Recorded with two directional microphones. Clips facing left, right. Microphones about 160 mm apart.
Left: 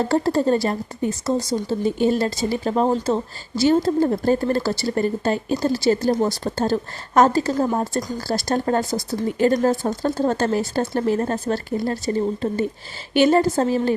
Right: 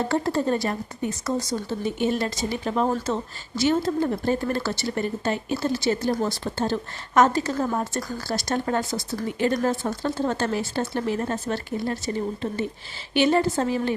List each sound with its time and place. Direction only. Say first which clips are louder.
0.1 s speech: left 5 dB; 35° left (ahead or behind)
10.0 s speech: left 4 dB; 40° left (ahead or behind)